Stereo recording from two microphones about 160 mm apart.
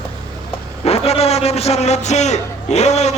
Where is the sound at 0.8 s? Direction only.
40° left (ahead or behind).